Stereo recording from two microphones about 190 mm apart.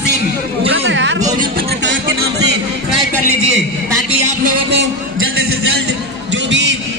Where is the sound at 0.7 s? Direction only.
75° right (ahead or behind).